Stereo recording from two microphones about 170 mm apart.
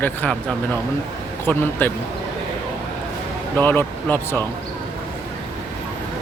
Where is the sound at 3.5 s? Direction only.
10° left (ahead or behind).